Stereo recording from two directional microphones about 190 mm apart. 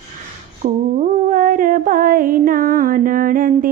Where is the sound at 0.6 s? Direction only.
35° right (ahead or behind).